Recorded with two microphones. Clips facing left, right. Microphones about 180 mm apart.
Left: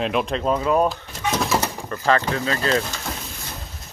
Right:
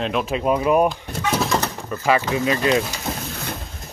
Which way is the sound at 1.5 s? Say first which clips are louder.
Even; 10° left (ahead or behind).